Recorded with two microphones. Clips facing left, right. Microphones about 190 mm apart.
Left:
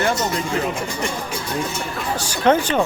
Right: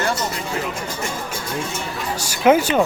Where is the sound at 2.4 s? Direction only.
10° right (ahead or behind).